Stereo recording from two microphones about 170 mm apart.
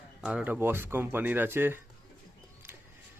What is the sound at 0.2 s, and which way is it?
Speech, 5° right (ahead or behind).